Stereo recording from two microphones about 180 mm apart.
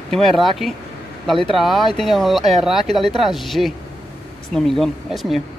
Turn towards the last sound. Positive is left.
turn(degrees=0)  # may be behind; listen again after turning